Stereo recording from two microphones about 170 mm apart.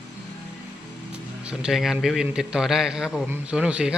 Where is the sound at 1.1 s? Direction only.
5° right (ahead or behind).